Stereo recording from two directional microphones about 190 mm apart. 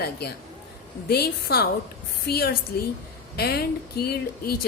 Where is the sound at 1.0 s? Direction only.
55° left (ahead or behind).